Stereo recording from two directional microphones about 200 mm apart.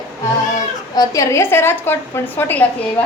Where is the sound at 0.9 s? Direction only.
15° left (ahead or behind).